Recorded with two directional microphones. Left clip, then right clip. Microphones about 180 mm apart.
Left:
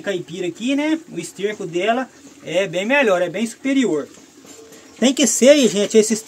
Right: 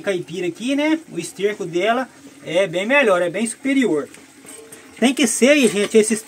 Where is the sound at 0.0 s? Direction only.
10° left (ahead or behind).